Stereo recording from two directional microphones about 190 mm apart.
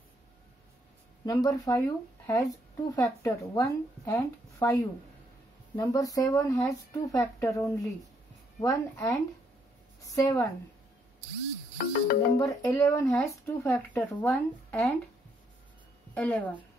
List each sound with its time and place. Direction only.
1.2 s speech: 20° left (ahead or behind)
5.8 s a woman's voice: 20° left (ahead or behind)
11.8 s speech: 50° left (ahead or behind)
12.4 s speech: 15° left (ahead or behind)
16.2 s speech: 10° left (ahead or behind)